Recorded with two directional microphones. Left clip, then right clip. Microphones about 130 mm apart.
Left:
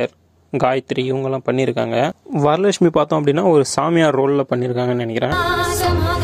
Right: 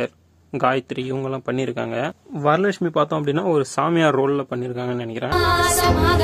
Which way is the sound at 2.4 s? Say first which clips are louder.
Left 4 dB; 45° left (ahead or behind).